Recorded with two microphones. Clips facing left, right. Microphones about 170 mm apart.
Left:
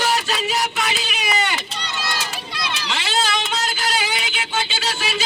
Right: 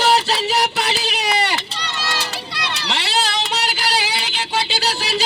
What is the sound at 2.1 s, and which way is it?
Run, 35° right (ahead or behind).